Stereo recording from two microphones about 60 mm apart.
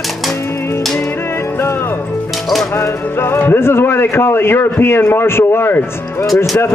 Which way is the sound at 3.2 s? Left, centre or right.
Left.